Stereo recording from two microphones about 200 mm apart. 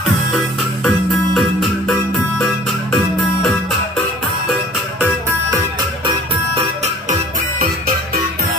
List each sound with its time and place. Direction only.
0.8 s music: centre (ahead or behind)
6.0 s music: 30° right (ahead or behind)